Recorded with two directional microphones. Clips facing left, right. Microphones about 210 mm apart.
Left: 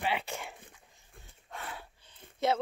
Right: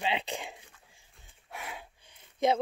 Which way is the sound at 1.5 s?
10° right (ahead or behind).